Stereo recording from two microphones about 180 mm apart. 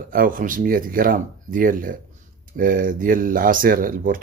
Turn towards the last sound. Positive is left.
turn(degrees=-50)  # may be behind; listen again after turning